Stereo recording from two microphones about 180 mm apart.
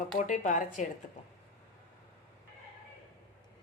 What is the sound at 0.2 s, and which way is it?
Speech, 45° left (ahead or behind).